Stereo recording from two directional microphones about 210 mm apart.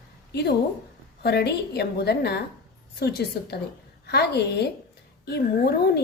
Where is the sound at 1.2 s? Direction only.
50° left (ahead or behind).